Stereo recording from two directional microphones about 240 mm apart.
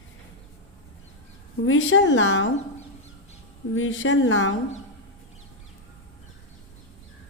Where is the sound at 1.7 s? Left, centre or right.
Left.